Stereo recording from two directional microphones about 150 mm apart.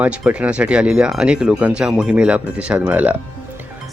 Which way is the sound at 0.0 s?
10° right (ahead or behind).